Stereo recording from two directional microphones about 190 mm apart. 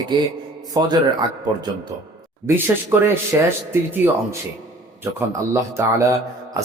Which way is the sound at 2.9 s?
10° right (ahead or behind).